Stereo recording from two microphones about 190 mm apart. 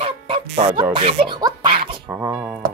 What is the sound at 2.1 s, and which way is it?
Speech, 10° right (ahead or behind).